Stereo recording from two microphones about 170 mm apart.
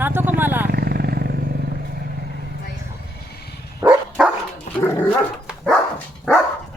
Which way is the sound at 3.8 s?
5° right (ahead or behind).